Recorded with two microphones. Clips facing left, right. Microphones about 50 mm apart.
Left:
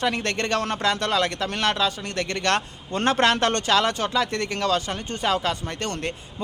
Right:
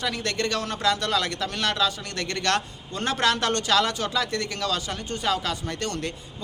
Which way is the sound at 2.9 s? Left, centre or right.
Left.